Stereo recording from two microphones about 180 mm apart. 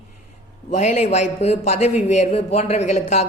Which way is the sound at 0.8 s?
40° left (ahead or behind).